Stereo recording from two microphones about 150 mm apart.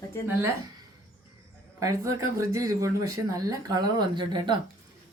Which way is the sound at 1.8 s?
20° right (ahead or behind).